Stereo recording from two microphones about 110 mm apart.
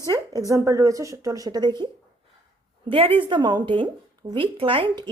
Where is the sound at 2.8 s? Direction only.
55° right (ahead or behind).